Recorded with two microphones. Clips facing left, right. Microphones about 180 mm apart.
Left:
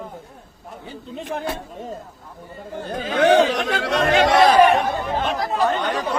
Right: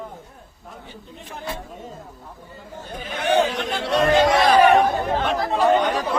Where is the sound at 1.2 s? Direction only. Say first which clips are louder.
Left 10 dB; 80° left.